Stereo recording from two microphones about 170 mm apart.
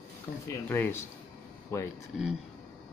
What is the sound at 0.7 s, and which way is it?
Speech, 10° left (ahead or behind).